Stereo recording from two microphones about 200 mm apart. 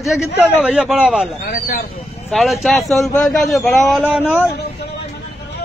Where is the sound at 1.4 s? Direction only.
50° left (ahead or behind).